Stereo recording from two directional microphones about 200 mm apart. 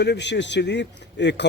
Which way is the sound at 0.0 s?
60° left (ahead or behind).